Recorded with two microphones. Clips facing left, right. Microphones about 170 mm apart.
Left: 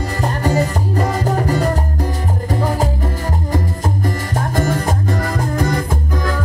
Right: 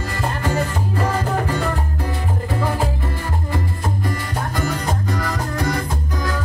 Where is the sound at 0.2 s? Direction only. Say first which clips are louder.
Left 4 dB; 35° left (ahead or behind).